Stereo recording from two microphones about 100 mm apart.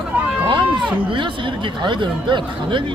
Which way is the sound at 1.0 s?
55° right (ahead or behind).